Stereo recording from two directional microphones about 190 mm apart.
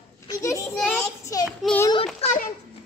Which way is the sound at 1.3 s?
15° left (ahead or behind).